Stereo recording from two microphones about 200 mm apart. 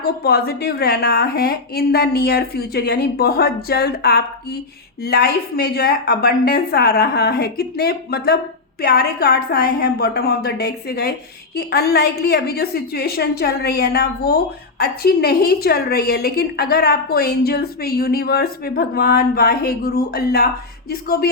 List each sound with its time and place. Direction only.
0.0 s a woman's voice: 50° left (ahead or behind)